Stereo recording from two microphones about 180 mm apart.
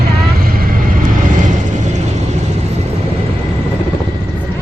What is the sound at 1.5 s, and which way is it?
Vehicle, 40° right (ahead or behind).